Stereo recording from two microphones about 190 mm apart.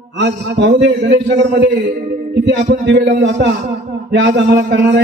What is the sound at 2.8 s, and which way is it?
A man's voice, 70° right (ahead or behind).